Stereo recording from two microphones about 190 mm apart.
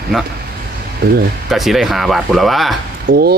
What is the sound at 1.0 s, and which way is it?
Speech, 55° right (ahead or behind).